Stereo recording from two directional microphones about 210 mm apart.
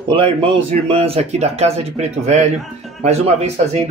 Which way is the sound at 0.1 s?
25° right (ahead or behind).